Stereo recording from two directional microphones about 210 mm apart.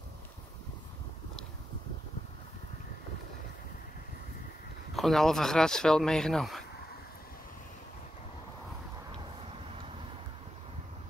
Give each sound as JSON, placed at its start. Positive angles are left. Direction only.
{"t": 4.9, "sound": "speech", "side_deg": 0}